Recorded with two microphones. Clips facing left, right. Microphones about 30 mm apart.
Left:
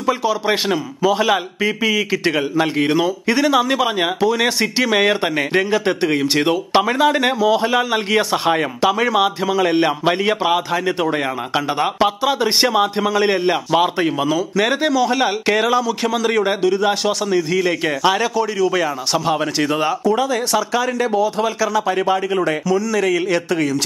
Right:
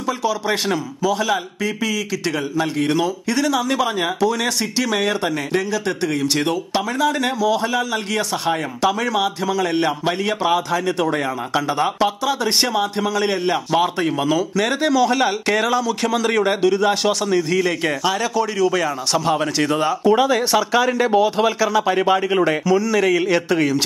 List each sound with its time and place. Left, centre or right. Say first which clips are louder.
0.0 s a man's voice: left 3 dB; centre
18.3 s a man's voice: left 1 dB; centre
20.2 s speech: right 2 dB; centre
21.1 s a man's voice: right 2 dB; right
21.5 s speech: right 1 dB; centre